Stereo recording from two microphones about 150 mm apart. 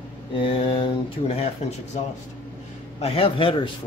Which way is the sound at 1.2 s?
50° left (ahead or behind).